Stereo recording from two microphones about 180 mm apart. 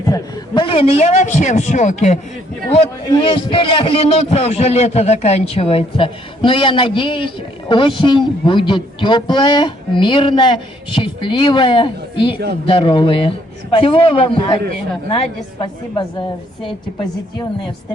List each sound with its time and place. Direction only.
0.0 s a man's voice: 20° left (ahead or behind); by 2.1 s 40° left (ahead or behind)
3.1 s a man's voice: 25° left (ahead or behind)